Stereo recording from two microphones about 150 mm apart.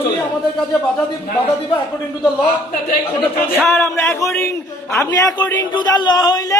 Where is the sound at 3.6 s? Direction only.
10° left (ahead or behind).